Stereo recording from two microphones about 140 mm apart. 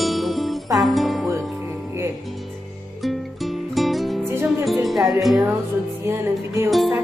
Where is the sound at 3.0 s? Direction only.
Centre (ahead or behind).